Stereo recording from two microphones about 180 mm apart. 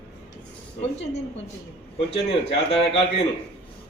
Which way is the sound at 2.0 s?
30° left (ahead or behind).